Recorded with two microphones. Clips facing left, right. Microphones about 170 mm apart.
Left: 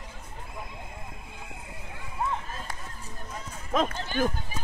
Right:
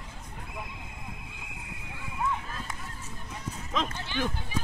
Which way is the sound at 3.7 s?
45° left (ahead or behind).